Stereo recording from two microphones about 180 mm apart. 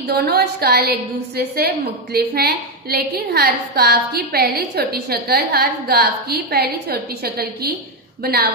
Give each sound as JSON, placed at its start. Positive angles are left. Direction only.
{"t": 0.1, "sound": "a woman's voice", "side_deg": -60}